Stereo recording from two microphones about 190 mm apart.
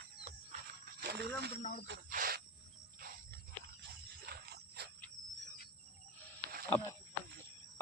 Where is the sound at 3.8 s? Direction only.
60° right (ahead or behind).